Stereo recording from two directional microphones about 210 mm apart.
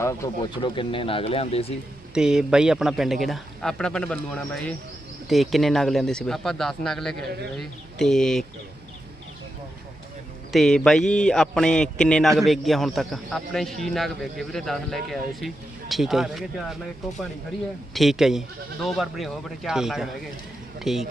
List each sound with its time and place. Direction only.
0.0 s speech: 15° left (ahead or behind)
2.1 s a man's voice: 5° right (ahead or behind)
10.5 s a man's voice: centre (ahead or behind)
17.9 s a man's voice: centre (ahead or behind)